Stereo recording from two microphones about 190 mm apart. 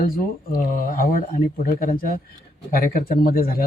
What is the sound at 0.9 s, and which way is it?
Speech, 50° left (ahead or behind).